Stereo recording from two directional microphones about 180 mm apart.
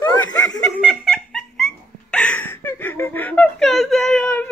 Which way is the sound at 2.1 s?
5° left (ahead or behind).